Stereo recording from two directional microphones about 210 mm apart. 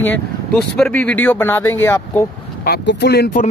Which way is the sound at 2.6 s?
50° left (ahead or behind).